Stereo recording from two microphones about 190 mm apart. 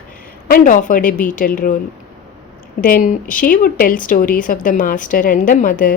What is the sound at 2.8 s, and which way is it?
Speech, 45° left (ahead or behind).